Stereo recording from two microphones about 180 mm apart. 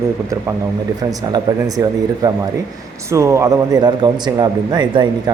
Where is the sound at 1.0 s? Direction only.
20° right (ahead or behind).